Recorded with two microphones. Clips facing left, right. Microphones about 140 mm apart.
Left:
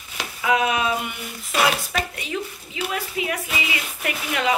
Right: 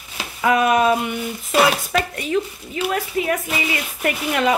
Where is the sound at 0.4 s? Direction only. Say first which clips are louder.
Right 5 dB; 50° right (ahead or behind).